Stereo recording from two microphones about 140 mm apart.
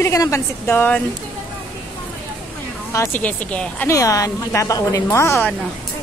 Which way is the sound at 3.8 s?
20° left (ahead or behind).